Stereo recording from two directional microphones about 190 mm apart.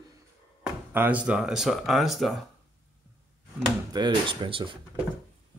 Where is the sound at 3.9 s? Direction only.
25° right (ahead or behind).